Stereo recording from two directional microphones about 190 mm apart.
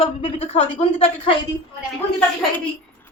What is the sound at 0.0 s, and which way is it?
Speech, 30° left (ahead or behind).